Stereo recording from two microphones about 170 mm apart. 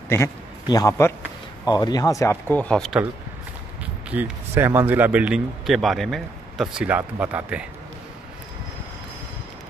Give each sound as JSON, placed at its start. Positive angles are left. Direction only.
{"t": 0.1, "sound": "a man's voice", "side_deg": 20}
{"t": 3.8, "sound": "speech", "side_deg": -10}